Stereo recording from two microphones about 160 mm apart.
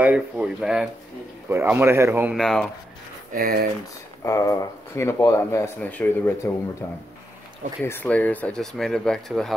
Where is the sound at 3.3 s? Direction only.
65° right (ahead or behind).